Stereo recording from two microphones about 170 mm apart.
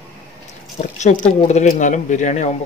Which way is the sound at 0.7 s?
45° left (ahead or behind).